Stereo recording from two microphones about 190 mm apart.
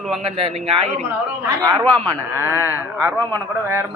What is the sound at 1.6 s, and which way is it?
A man's voice, 20° right (ahead or behind).